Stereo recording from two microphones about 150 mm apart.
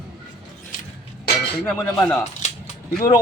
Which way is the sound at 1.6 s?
5° left (ahead or behind).